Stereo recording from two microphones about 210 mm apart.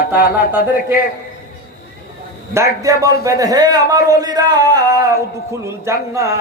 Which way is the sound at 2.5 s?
15° right (ahead or behind).